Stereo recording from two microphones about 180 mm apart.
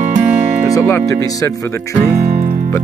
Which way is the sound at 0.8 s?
15° left (ahead or behind).